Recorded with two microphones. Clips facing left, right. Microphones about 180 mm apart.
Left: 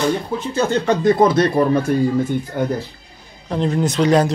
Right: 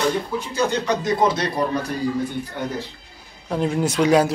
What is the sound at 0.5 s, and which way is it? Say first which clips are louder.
Speech: left 4 dB; 50° left (ahead or behind).